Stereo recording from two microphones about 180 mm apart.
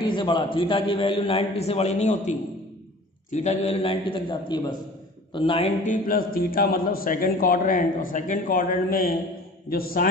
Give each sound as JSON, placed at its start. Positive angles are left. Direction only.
{"t": 0.0, "sound": "a man's voice", "side_deg": 25}
{"t": 5.8, "sound": "a man's voice", "side_deg": 45}